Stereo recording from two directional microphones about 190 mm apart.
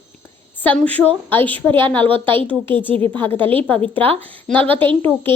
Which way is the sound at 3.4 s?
30° right (ahead or behind).